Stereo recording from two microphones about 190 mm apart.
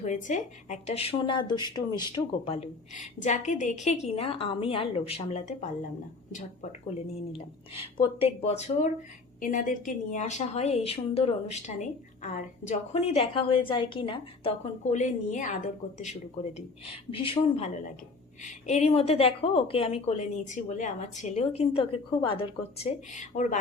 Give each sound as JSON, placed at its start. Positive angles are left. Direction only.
{"t": 0.0, "sound": "a woman's voice", "side_deg": 40}